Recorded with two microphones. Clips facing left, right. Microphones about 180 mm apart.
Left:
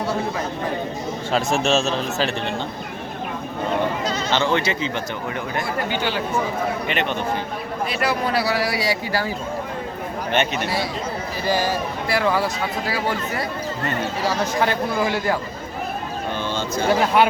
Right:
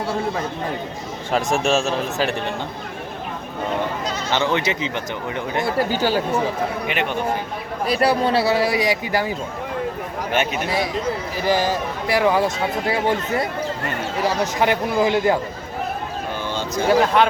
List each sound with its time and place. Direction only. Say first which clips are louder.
1.3 s a man's voice: right 1 dB; 15° right (ahead or behind)
4.3 s a man's voice: right 1 dB; 15° right (ahead or behind)
5.9 s speech: right 4 dB; 40° right (ahead or behind)
6.8 s a man's voice: even; 10° right (ahead or behind)
7.9 s speech: right 6 dB; 40° right (ahead or behind)
8.2 s speech: right 3 dB; 25° right (ahead or behind)
10.3 s a man's voice: even; 10° right (ahead or behind)
11.4 s speech: right 2 dB; 20° right (ahead or behind)
16.9 s speech: right 1 dB; centre (ahead or behind)